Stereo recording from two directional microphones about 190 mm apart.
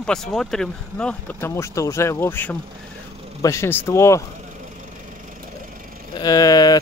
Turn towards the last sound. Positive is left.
turn(degrees=20)  # may be behind; listen again after turning